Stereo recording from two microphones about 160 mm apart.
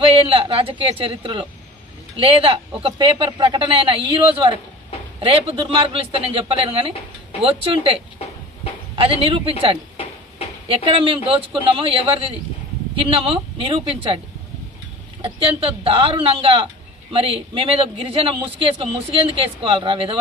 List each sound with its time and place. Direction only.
0.0 s a man's voice: 35° right (ahead or behind)
15.2 s a man's voice: 35° right (ahead or behind)